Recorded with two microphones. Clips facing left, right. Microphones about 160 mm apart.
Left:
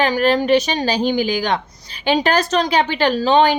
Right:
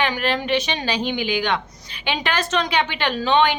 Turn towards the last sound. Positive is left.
turn(degrees=35)  # may be behind; listen again after turning